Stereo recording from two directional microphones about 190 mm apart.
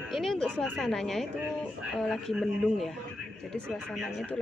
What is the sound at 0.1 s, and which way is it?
A woman's voice, centre (ahead or behind).